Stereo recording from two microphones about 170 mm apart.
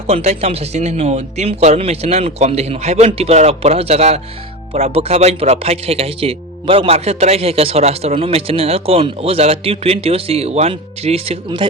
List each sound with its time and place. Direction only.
0.1 s a man's voice: 40° right (ahead or behind)